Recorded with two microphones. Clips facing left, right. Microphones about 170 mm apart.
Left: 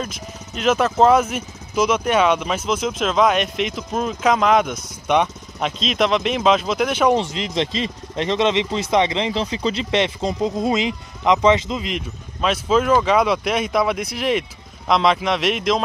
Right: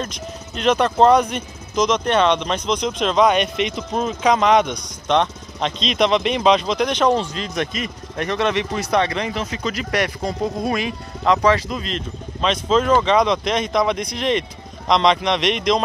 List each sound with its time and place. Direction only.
0.0 s speech: 5° left (ahead or behind)
7.2 s speech: 20° left (ahead or behind)
12.4 s speech: 5° left (ahead or behind)